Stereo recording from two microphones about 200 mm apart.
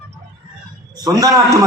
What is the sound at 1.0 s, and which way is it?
Speech, 15° right (ahead or behind).